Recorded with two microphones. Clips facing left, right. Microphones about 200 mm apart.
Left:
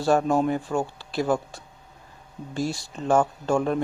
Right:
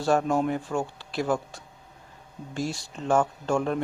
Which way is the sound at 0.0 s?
35° left (ahead or behind).